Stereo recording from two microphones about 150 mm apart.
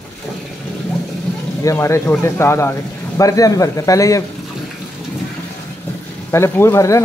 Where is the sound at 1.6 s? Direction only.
20° left (ahead or behind).